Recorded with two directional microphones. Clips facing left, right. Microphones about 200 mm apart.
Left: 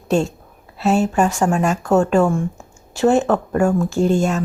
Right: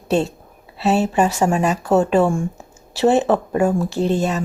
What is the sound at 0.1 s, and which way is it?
Speech, 40° right (ahead or behind).